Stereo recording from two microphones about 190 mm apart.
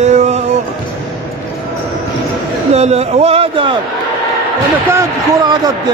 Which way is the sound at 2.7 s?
35° right (ahead or behind).